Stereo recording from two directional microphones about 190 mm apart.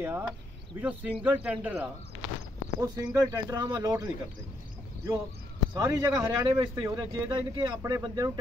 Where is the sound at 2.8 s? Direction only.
20° right (ahead or behind).